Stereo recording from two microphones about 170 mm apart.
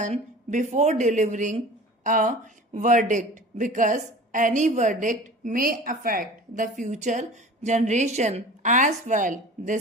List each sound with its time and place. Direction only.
0.0 s a woman's voice: 45° right (ahead or behind)